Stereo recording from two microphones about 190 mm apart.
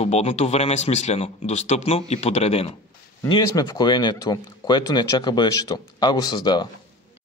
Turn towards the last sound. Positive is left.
turn(degrees=20)  # may be behind; listen again after turning